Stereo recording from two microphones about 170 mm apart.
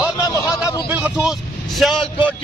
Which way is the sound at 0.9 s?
5° right (ahead or behind).